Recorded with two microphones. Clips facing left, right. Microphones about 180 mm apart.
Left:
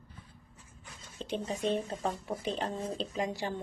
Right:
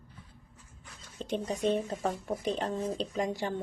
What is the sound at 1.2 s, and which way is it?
A woman's voice, 45° right (ahead or behind).